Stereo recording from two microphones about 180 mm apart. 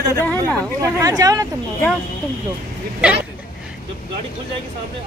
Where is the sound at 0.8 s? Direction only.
20° right (ahead or behind).